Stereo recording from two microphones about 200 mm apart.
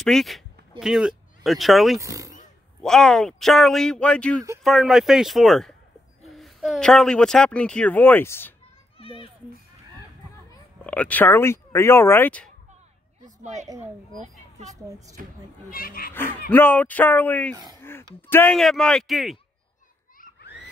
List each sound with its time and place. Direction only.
0.0 s speech: centre (ahead or behind)
2.0 s speech: 15° right (ahead or behind)
2.8 s speech: 5° left (ahead or behind)
8.9 s a child's voice: 25° left (ahead or behind)
10.8 s speech: 5° left (ahead or behind)
13.4 s a woman's voice: 35° right (ahead or behind)
14.1 s vehicle: 35° right (ahead or behind)
15.2 s speech: 45° right (ahead or behind)
15.7 s speech: 45° left (ahead or behind)
16.1 s speech: 10° left (ahead or behind)
17.7 s a sound: 10° left (ahead or behind)
18.2 s speech: 10° left (ahead or behind)
20.2 s a sound: 55° left (ahead or behind)